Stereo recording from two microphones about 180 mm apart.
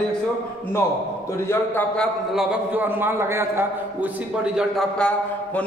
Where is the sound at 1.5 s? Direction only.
10° left (ahead or behind).